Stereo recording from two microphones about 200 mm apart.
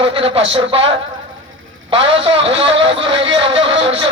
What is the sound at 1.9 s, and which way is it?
Speech, 25° right (ahead or behind).